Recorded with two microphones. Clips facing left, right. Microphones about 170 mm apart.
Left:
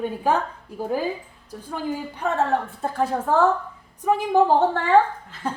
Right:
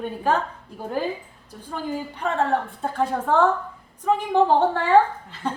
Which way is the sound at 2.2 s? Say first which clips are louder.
Left 1 dB; 10° left (ahead or behind).